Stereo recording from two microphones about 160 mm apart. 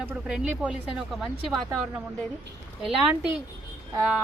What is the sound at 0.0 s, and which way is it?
Speech, 5° right (ahead or behind).